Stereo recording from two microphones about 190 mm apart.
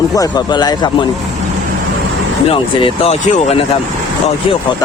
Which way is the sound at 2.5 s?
30° left (ahead or behind).